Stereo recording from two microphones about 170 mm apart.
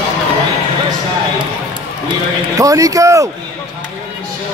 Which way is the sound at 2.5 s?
20° right (ahead or behind).